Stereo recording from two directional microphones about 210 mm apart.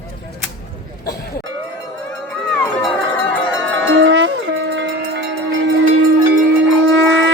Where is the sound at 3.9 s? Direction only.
60° right (ahead or behind).